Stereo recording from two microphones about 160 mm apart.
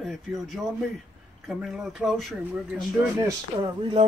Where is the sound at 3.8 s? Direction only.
35° right (ahead or behind).